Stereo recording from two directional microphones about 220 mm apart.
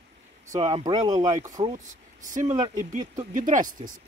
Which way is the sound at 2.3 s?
30° right (ahead or behind).